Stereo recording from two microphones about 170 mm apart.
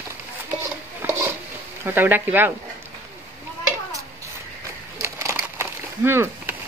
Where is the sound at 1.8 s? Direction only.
10° right (ahead or behind).